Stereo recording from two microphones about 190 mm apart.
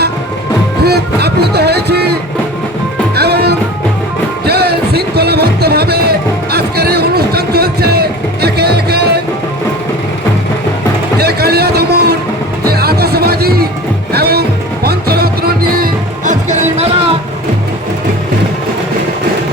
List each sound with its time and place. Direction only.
0.8 s music: 60° right (ahead or behind)
3.2 s music: 55° right (ahead or behind)
11.2 s a sound: 55° right (ahead or behind)
12.6 s music: 55° right (ahead or behind); by 17.2 s 35° right (ahead or behind)